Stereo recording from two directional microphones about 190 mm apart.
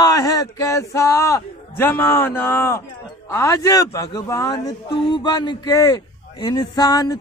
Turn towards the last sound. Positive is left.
turn(degrees=20)  # may be behind; listen again after turning